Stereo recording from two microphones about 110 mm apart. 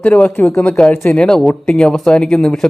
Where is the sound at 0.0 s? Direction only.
10° left (ahead or behind).